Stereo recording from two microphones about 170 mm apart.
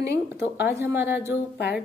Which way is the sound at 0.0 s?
75° left (ahead or behind).